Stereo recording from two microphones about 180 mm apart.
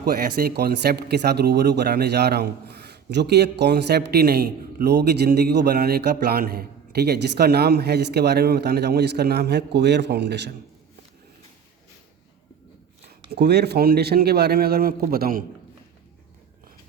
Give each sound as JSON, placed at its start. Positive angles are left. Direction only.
{"t": 0.0, "sound": "speech", "side_deg": -60}
{"t": 13.2, "sound": "speech", "side_deg": -65}